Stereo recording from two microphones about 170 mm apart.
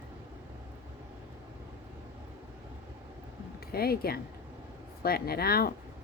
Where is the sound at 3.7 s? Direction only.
65° left (ahead or behind).